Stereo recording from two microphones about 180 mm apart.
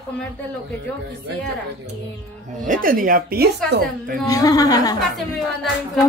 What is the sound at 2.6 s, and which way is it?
A woman's voice, 50° right (ahead or behind).